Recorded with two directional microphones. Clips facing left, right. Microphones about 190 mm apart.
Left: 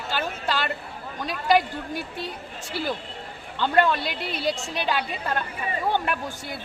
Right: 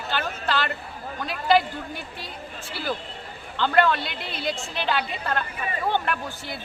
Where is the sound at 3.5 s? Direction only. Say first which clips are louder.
Even; 15° left (ahead or behind).